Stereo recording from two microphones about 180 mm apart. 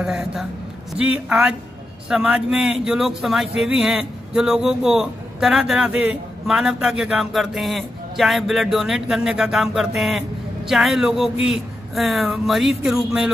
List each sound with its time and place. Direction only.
0.0 s speech: 5° right (ahead or behind)